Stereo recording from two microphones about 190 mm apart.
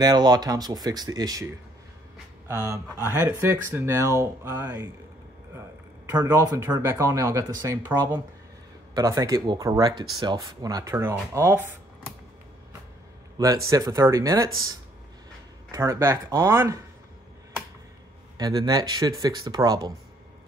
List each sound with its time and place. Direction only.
0.0 s speech: 20° right (ahead or behind)
6.0 s speech: 20° right (ahead or behind)
13.7 s speech: 20° right (ahead or behind)
15.7 s speech: 15° right (ahead or behind)
18.4 s speech: 20° right (ahead or behind)